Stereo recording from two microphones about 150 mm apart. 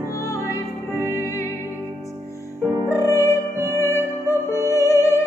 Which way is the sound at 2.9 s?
20° left (ahead or behind).